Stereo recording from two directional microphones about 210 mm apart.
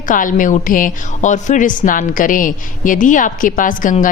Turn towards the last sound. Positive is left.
turn(degrees=40)  # may be behind; listen again after turning